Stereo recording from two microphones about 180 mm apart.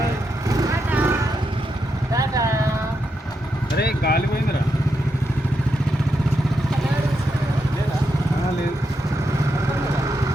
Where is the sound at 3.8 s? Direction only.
60° left (ahead or behind).